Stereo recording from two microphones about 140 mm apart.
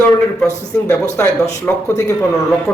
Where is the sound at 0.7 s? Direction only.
15° left (ahead or behind).